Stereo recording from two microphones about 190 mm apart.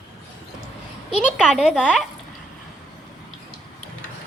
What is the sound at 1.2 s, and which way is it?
Speech, centre (ahead or behind).